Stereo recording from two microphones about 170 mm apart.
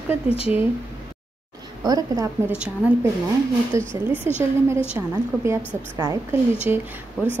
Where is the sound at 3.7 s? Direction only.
15° right (ahead or behind).